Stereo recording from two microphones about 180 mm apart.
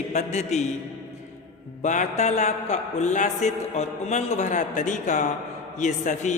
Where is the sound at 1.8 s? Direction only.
40° left (ahead or behind).